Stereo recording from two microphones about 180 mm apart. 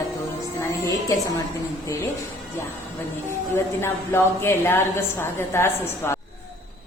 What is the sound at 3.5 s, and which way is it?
A woman's voice, 15° left (ahead or behind).